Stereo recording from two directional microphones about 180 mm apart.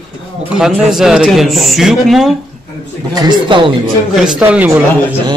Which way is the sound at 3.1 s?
25° right (ahead or behind).